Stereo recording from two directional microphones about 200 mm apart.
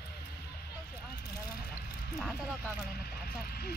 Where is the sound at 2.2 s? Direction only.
Centre (ahead or behind).